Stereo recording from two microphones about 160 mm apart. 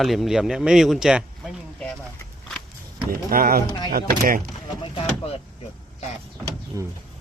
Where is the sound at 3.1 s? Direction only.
60° right (ahead or behind).